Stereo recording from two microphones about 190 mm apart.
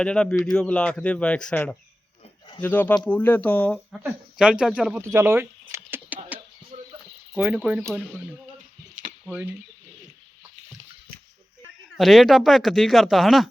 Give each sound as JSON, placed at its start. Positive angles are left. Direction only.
{"t": 0.0, "sound": "speech", "side_deg": 5}
{"t": 3.9, "sound": "speech", "side_deg": -5}
{"t": 5.0, "sound": "a sound", "side_deg": -15}
{"t": 6.7, "sound": "a sound", "side_deg": -40}
{"t": 7.3, "sound": "speech", "side_deg": -10}
{"t": 9.2, "sound": "speech", "side_deg": -5}
{"t": 11.9, "sound": "speech", "side_deg": 0}